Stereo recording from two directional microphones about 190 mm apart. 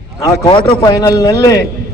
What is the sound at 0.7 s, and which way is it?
Speech, 25° left (ahead or behind).